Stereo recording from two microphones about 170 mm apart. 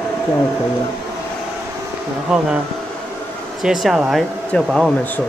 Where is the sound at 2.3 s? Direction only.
5° right (ahead or behind).